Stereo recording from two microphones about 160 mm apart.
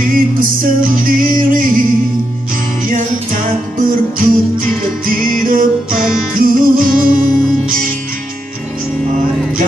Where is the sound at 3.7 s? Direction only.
60° right (ahead or behind).